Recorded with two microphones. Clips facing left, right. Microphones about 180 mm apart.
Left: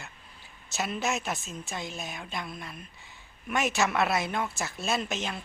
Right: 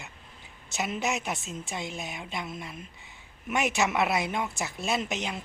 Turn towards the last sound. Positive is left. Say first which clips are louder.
# right 1 dB
turn(degrees=-20)  # may be behind; listen again after turning